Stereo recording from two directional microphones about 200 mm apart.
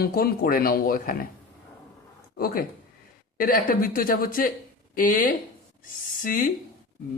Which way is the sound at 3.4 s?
45° left (ahead or behind).